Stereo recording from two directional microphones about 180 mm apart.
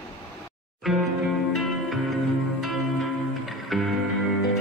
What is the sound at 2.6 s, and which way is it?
Music, centre (ahead or behind).